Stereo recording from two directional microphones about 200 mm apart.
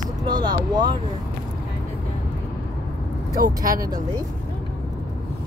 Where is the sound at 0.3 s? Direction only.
20° right (ahead or behind).